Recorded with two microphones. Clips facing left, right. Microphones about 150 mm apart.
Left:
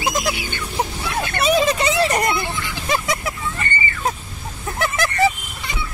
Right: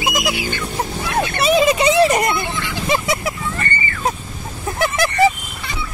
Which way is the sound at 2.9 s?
10° right (ahead or behind).